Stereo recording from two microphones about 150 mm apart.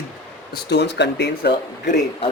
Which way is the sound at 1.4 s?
90° left.